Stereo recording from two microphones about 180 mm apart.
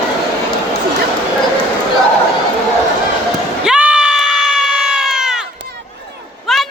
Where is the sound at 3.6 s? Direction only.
5° right (ahead or behind).